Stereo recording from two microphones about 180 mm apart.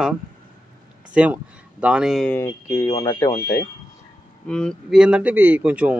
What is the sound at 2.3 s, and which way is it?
Speech, 15° left (ahead or behind).